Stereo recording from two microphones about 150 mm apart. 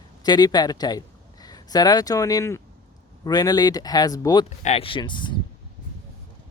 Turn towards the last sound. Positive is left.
turn(degrees=30)  # may be behind; listen again after turning